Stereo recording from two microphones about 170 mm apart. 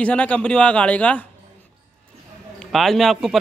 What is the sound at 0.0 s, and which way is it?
A man's voice, 5° left (ahead or behind).